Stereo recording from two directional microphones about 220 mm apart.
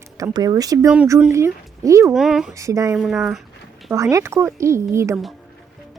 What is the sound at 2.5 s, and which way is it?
Speech, 15° right (ahead or behind).